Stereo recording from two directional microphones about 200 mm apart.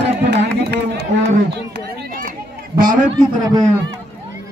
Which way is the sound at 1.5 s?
50° right (ahead or behind).